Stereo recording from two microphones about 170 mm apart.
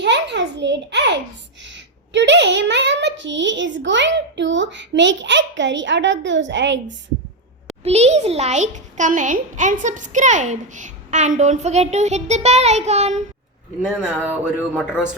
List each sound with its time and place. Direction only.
0.0 s a sound: 90° right
1.6 s a woman's voice: 90° right
7.9 s a child's voice: 40° right (ahead or behind)
13.8 s speech: 5° right (ahead or behind)